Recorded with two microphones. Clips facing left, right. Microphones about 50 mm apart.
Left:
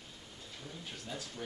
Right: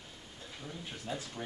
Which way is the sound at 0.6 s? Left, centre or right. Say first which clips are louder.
Right 4 dB; right.